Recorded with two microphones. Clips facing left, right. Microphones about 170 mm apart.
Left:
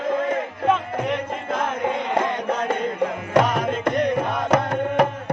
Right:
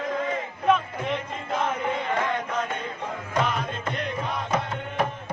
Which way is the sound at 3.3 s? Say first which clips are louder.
Left 7 dB; 80° left.